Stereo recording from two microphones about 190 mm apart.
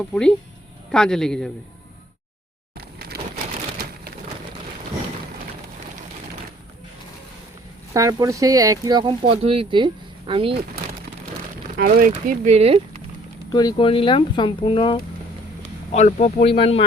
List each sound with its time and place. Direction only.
0.0 s speech: 5° left (ahead or behind)
2.7 s a sound: 55° right (ahead or behind)
7.9 s speech: 15° right (ahead or behind)
11.8 s speech: 50° right (ahead or behind); by 13.0 s 35° right (ahead or behind)
13.5 s speech: 20° left (ahead or behind)
15.9 s speech: 35° left (ahead or behind)